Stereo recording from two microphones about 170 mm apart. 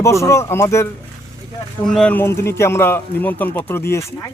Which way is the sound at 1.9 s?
5° left (ahead or behind).